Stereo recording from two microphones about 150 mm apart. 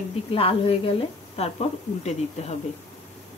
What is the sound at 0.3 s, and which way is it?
Speech, 40° left (ahead or behind).